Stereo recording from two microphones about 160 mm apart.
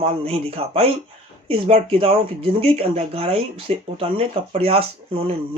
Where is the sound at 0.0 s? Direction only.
35° right (ahead or behind).